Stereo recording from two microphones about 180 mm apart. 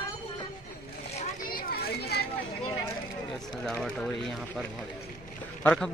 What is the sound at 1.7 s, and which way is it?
Children playing, 60° left (ahead or behind).